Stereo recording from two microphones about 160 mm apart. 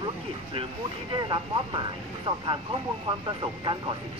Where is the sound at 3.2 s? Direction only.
30° right (ahead or behind).